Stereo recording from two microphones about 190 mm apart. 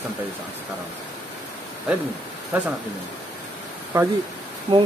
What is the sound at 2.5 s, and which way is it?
Speech, 10° right (ahead or behind).